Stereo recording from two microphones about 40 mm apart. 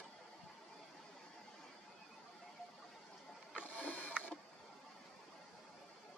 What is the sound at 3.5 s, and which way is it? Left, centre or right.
Printer, left.